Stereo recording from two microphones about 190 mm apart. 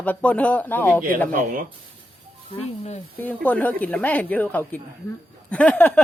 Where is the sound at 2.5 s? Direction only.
35° left (ahead or behind).